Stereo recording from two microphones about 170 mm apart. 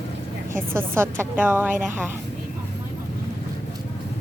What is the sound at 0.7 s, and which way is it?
A woman's voice, 15° right (ahead or behind).